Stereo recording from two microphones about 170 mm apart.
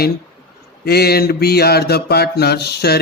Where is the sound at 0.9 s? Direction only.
70° left (ahead or behind).